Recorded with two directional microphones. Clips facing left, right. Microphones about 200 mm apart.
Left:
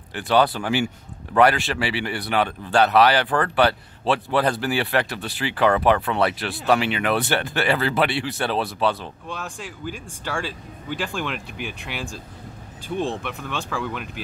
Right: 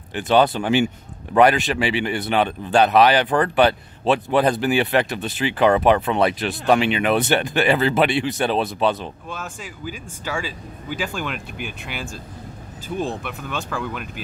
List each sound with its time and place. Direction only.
0.1 s a man's voice: 20° right (ahead or behind)
9.3 s speech: 5° right (ahead or behind)